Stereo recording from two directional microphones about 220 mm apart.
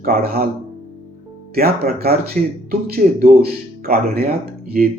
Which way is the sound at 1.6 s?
45° right (ahead or behind).